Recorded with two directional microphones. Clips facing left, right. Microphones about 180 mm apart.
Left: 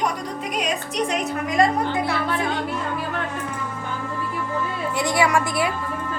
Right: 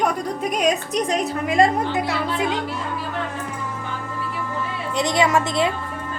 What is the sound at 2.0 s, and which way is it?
Speech, 20° right (ahead or behind).